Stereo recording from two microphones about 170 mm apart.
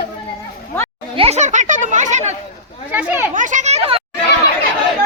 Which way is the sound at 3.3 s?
50° right (ahead or behind).